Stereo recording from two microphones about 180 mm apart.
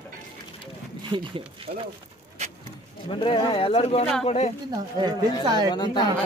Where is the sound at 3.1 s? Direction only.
30° left (ahead or behind).